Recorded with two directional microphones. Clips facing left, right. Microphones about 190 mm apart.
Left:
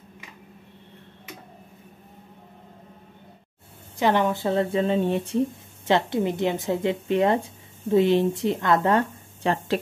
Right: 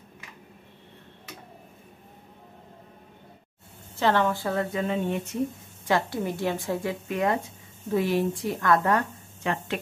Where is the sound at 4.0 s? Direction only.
15° left (ahead or behind).